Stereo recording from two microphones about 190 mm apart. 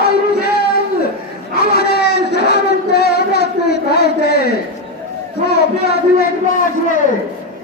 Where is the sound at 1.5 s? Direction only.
55° left (ahead or behind).